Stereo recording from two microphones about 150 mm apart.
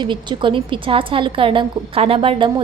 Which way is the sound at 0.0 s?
30° right (ahead or behind).